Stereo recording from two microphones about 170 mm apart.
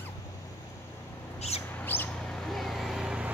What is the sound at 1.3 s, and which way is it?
Bird, 40° left (ahead or behind).